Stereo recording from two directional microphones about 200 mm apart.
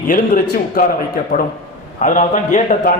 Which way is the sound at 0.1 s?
45° left (ahead or behind).